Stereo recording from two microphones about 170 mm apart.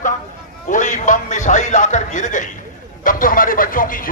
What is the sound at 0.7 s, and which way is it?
Speech, 50° left (ahead or behind).